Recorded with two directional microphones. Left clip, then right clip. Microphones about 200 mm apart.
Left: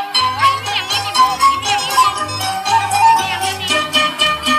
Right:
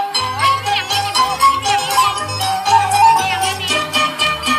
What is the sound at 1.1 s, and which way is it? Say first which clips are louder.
Music: left 2 dB; 35° right (ahead or behind).